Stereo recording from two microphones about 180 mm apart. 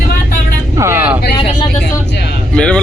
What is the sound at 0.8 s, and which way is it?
Speech, 15° right (ahead or behind).